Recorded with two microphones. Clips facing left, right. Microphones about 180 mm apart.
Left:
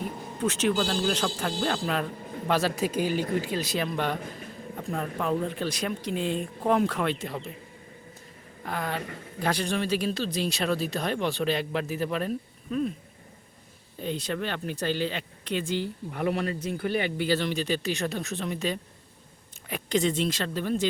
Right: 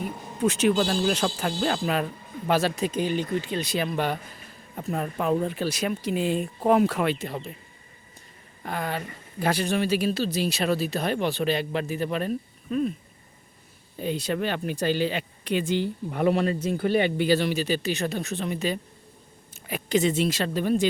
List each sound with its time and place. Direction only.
0.4 s speech: 10° right (ahead or behind)
8.6 s speech: centre (ahead or behind)
14.0 s speech: 10° right (ahead or behind); by 17.2 s 25° right (ahead or behind)
17.2 s speech: 10° right (ahead or behind)